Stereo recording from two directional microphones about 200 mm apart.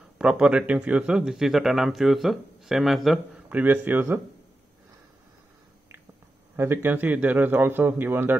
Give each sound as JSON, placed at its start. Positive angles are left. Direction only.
{"t": 0.2, "sound": "speech", "side_deg": -5}
{"t": 6.5, "sound": "a man's voice", "side_deg": -10}